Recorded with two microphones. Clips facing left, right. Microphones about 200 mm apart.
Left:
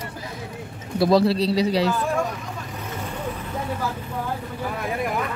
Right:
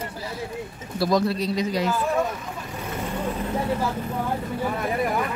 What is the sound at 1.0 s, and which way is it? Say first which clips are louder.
Speech: left 4 dB; 30° left (ahead or behind).